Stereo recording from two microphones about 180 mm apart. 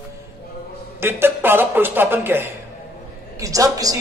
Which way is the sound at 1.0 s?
15° right (ahead or behind).